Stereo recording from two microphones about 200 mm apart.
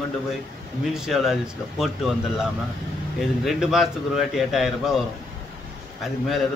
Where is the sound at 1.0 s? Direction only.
Centre (ahead or behind).